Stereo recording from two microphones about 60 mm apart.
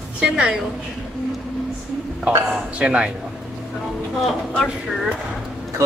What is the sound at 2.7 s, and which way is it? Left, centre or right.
Speech, centre.